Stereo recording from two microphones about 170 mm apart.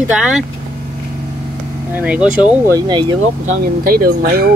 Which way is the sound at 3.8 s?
60° right (ahead or behind).